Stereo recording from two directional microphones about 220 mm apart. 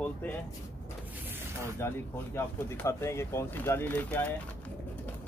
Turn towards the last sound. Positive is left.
turn(degrees=10)  # may be behind; listen again after turning